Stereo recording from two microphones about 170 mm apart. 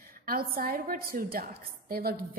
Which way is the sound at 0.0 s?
60° right (ahead or behind).